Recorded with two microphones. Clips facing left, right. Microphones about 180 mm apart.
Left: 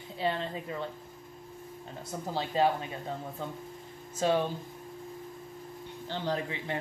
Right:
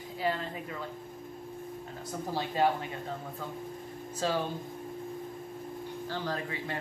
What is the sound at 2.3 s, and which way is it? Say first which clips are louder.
Speech: left 1 dB; 20° left (ahead or behind).